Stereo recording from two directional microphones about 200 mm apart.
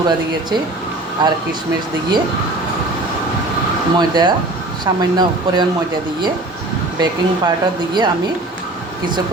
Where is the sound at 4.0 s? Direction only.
20° right (ahead or behind).